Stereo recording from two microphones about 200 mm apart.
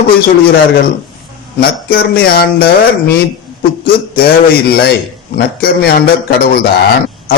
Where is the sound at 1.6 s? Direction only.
50° left (ahead or behind).